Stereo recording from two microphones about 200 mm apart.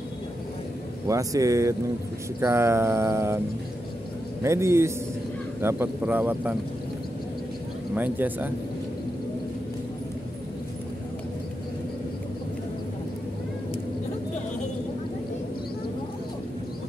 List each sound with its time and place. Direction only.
1.0 s mantra: 15° right (ahead or behind)
4.4 s mantra: 15° right (ahead or behind)
7.9 s mantra: 10° right (ahead or behind)